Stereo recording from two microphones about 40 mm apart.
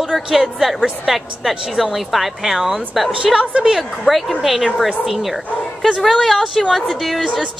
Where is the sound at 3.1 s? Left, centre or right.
Right.